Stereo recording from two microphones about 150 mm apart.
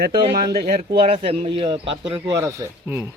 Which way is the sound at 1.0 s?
40° right (ahead or behind).